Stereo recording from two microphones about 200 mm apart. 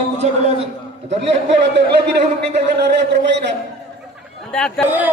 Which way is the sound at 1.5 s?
60° right (ahead or behind).